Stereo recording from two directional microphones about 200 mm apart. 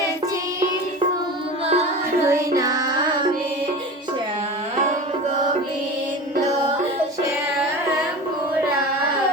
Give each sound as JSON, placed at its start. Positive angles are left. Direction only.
{"t": 1.6, "sound": "music", "side_deg": -30}
{"t": 2.2, "sound": "child singing", "side_deg": -15}